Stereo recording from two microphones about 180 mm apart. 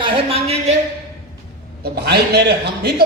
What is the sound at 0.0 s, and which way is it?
Speech, 35° right (ahead or behind).